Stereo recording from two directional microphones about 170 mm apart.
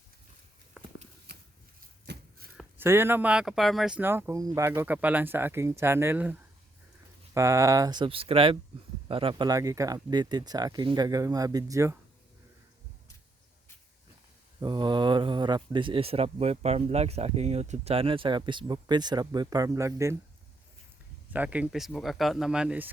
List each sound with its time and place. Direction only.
2.1 s a sound: 75° right (ahead or behind)
2.7 s speech: 15° right (ahead or behind)
7.3 s speech: 15° right (ahead or behind)
14.6 s speech: 25° right (ahead or behind)
21.3 s speech: 10° right (ahead or behind)